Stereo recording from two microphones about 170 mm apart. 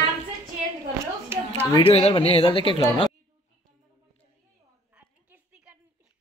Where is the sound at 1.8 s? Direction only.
35° left (ahead or behind).